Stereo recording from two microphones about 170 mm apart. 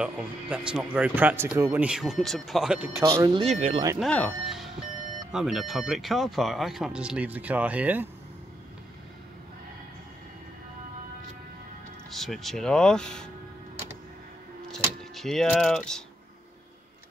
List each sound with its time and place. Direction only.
0.0 s speech: 5° right (ahead or behind)
3.0 s speech: 20° right (ahead or behind)
3.3 s speech: 35° right (ahead or behind)
4.0 s speech: 5° left (ahead or behind)
12.1 s speech: centre (ahead or behind)
14.7 s speech: centre (ahead or behind)